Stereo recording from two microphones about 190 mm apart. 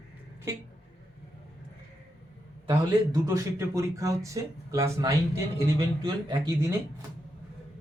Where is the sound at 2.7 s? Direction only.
20° right (ahead or behind).